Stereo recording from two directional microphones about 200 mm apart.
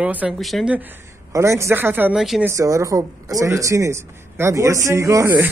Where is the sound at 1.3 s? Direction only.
15° right (ahead or behind).